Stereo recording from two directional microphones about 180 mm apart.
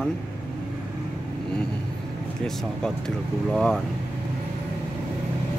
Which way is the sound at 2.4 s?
5° left (ahead or behind).